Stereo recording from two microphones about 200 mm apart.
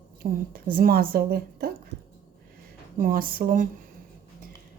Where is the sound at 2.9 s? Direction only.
45° right (ahead or behind).